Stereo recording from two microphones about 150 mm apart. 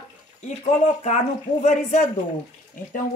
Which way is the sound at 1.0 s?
50° left (ahead or behind).